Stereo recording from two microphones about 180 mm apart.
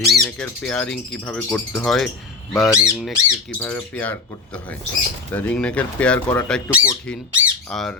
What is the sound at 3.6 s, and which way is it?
Speech, 10° left (ahead or behind).